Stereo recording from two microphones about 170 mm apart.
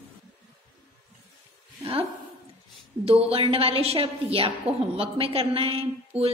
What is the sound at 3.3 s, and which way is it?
A woman's voice, 35° right (ahead or behind).